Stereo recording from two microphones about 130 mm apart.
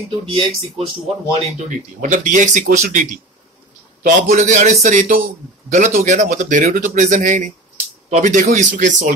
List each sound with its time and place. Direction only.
0.3 s speech: 50° right (ahead or behind)
1.7 s a man's voice: 75° right (ahead or behind)